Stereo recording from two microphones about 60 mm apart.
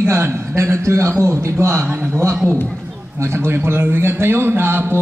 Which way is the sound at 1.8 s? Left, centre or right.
Right.